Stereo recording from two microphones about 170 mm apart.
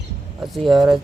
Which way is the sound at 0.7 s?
Centre (ahead or behind).